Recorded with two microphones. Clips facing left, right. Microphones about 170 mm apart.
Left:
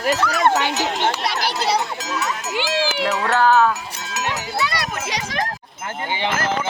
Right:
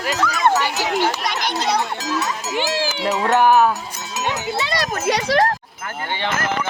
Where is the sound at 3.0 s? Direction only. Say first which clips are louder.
Right 3 dB; 20° right (ahead or behind).